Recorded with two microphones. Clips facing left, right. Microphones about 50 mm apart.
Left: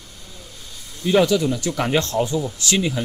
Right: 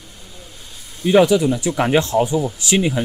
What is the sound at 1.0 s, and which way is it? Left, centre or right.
Speech, centre.